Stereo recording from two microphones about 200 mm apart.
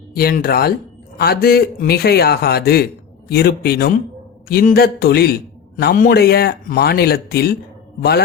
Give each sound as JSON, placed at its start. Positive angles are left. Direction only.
{"t": 0.1, "sound": "a man's voice", "side_deg": 50}